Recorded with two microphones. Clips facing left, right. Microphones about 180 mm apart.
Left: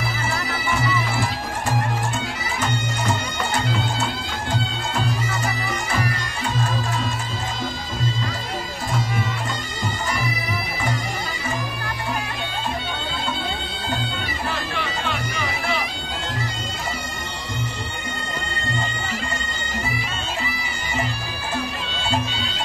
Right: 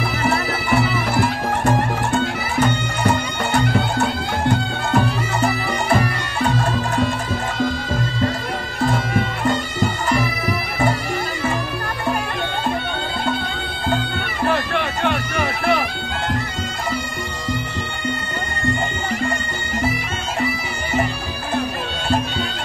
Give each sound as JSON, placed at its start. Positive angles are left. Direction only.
{"t": 0.3, "sound": "music", "side_deg": -65}
{"t": 8.8, "sound": "music", "side_deg": -60}
{"t": 14.4, "sound": "bagpipes", "side_deg": -60}